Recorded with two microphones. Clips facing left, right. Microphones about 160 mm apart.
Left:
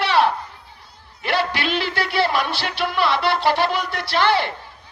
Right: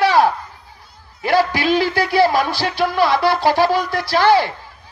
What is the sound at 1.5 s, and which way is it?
Speech, 60° left (ahead or behind).